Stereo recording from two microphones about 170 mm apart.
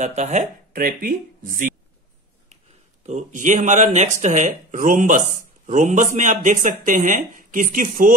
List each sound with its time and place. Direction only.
0.0 s speech: 45° right (ahead or behind)
3.1 s speech: 45° right (ahead or behind)